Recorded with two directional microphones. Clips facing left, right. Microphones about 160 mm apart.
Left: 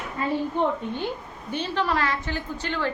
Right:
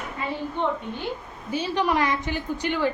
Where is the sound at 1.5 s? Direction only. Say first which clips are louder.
Right 2 dB; 10° right (ahead or behind).